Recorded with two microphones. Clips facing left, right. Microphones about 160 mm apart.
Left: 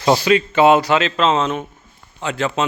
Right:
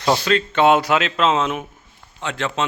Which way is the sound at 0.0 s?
10° left (ahead or behind).